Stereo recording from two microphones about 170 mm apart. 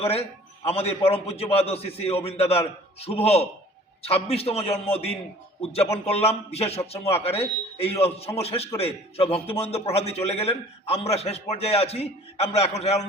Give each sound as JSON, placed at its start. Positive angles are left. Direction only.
{"t": 0.0, "sound": "a man's voice", "side_deg": 35}